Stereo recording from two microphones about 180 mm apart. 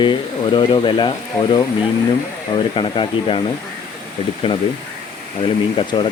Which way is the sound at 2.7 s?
30° left (ahead or behind).